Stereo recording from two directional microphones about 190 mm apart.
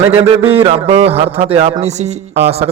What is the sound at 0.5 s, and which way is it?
A man's voice, 30° right (ahead or behind).